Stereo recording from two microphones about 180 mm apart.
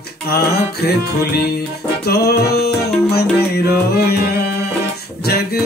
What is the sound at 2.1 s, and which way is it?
Music, 60° left (ahead or behind).